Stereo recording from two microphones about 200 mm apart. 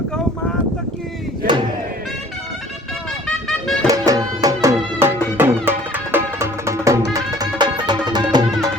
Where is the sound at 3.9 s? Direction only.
15° right (ahead or behind).